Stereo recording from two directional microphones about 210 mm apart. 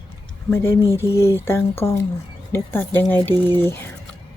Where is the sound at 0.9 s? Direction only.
15° left (ahead or behind).